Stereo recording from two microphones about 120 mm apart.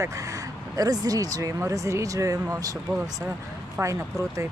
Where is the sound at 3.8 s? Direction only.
25° right (ahead or behind).